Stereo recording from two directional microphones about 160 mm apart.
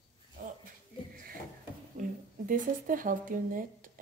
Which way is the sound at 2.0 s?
60° right (ahead or behind).